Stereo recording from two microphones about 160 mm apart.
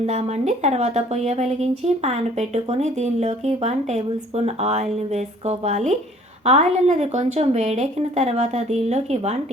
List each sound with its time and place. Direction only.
0.0 s a woman's voice: 45° right (ahead or behind)